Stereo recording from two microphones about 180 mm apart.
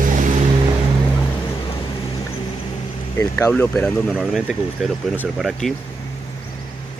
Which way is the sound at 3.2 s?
15° left (ahead or behind).